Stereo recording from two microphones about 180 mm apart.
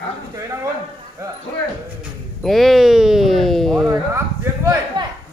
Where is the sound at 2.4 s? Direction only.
Centre (ahead or behind).